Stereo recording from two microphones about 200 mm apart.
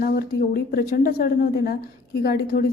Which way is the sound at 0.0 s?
50° left (ahead or behind).